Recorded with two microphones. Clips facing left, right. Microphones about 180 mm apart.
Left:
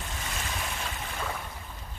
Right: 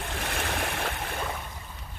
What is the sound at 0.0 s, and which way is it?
Waves, 60° right (ahead or behind).